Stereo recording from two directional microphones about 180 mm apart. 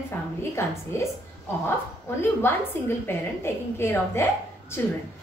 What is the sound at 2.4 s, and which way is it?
A woman's voice, 15° left (ahead or behind).